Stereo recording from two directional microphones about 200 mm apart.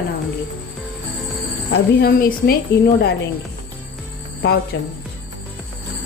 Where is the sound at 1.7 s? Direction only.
55° left (ahead or behind).